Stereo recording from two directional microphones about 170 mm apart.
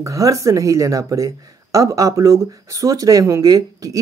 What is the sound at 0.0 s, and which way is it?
Speech, 20° right (ahead or behind).